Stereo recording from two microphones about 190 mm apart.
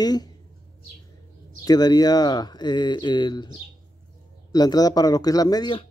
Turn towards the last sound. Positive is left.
turn(degrees=20)  # may be behind; listen again after turning